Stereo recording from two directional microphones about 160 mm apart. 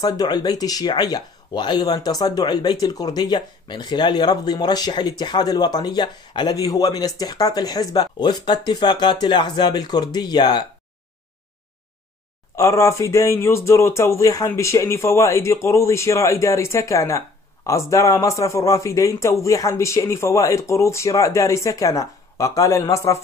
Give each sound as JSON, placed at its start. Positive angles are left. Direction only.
{"t": 0.0, "sound": "speech", "side_deg": 25}
{"t": 12.5, "sound": "speech", "side_deg": 20}